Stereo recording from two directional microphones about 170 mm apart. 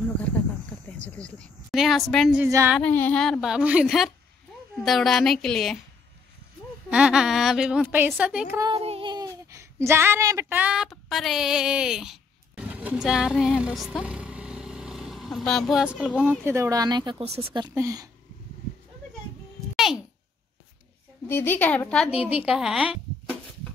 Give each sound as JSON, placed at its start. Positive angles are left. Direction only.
{"t": 1.1, "sound": "a woman's voice", "side_deg": 5}
{"t": 2.4, "sound": "female singing", "side_deg": -15}
{"t": 2.8, "sound": "a woman's voice", "side_deg": 10}
{"t": 6.9, "sound": "a woman's voice", "side_deg": -5}
{"t": 8.5, "sound": "child singing", "side_deg": -30}
{"t": 9.5, "sound": "a woman's voice", "side_deg": -15}
{"t": 14.0, "sound": "vehicle", "side_deg": -5}
{"t": 16.3, "sound": "speech", "side_deg": -15}
{"t": 19.7, "sound": "a sound", "side_deg": 0}
{"t": 21.3, "sound": "a woman's voice", "side_deg": 10}